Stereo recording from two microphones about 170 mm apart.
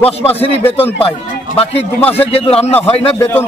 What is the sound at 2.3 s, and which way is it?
Speech, 35° left (ahead or behind).